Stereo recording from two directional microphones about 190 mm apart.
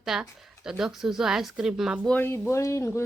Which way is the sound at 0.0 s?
Centre (ahead or behind).